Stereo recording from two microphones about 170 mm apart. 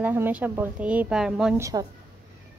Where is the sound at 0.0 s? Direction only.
10° right (ahead or behind).